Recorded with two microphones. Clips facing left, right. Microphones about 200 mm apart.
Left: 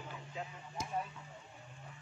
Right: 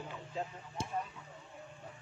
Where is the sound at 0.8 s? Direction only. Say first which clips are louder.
Right 2 dB; 30° right (ahead or behind).